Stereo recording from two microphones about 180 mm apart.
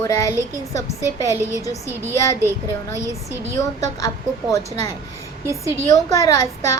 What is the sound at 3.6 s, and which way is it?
Speech, 20° left (ahead or behind).